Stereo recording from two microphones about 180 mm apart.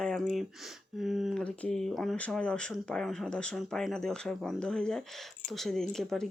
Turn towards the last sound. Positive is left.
turn(degrees=0)  # may be behind; listen again after turning